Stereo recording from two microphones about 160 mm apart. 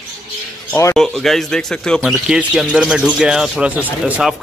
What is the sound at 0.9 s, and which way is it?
Speech, centre (ahead or behind).